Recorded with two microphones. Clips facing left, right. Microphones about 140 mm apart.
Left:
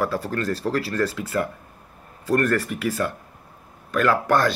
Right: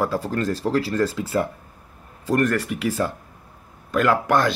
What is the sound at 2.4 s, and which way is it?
Speech, 15° right (ahead or behind).